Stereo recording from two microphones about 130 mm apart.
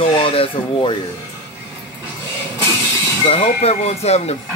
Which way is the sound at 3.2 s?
45° left (ahead or behind).